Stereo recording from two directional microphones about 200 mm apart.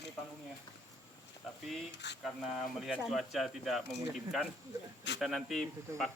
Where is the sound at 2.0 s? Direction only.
60° left (ahead or behind).